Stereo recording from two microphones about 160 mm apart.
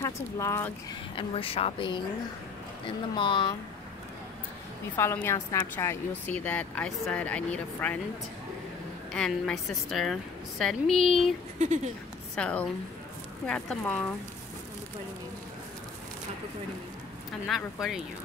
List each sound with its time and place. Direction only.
0.0 s speech: 20° left (ahead or behind)
1.1 s speech: 35° left (ahead or behind)
3.2 s speech: 30° left (ahead or behind)
4.9 s speech: 15° left (ahead or behind)
9.1 s a woman's voice: 5° left (ahead or behind)
11.6 s speech: 50° right (ahead or behind)
12.4 s speech: 5° left (ahead or behind)
17.7 s a woman's voice: 5° right (ahead or behind)